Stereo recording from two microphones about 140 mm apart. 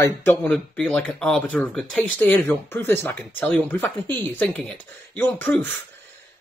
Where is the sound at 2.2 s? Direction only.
15° left (ahead or behind).